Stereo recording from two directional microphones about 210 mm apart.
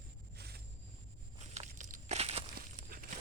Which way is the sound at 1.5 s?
35° right (ahead or behind).